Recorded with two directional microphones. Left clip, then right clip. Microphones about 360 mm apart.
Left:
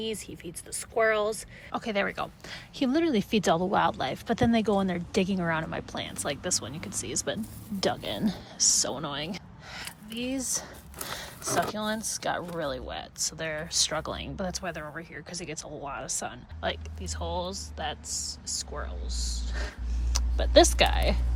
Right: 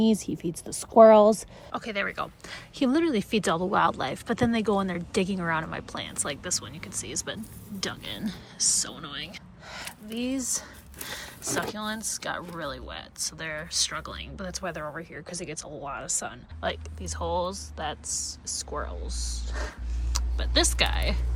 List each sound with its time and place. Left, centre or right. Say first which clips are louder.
0.2 s speech: right 8 dB; centre
1.7 s speech: left 1 dB; centre
9.7 s speech: right 2 dB; centre